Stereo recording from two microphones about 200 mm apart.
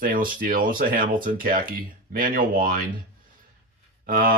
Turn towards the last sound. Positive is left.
turn(degrees=-45)  # may be behind; listen again after turning